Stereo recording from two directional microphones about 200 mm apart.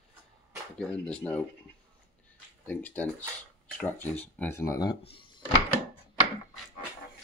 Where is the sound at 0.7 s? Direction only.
5° left (ahead or behind).